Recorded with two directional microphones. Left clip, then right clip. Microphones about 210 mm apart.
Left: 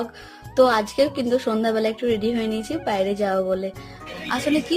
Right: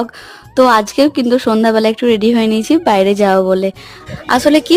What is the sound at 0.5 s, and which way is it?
A woman's voice, 40° right (ahead or behind).